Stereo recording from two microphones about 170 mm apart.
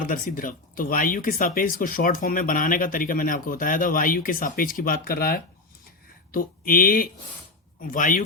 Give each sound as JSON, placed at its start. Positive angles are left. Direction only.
{"t": 0.1, "sound": "speech", "side_deg": 55}